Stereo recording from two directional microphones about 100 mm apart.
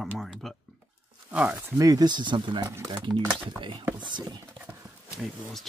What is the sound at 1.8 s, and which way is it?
Speech, 40° right (ahead or behind).